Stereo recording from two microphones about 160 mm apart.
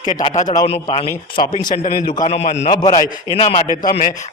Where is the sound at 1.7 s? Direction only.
50° left (ahead or behind).